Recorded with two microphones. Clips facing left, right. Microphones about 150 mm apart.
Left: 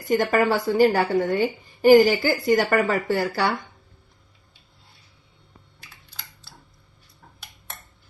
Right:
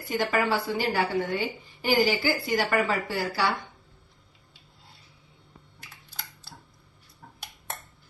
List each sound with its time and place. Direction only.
0.2 s a woman's voice: 45° left (ahead or behind)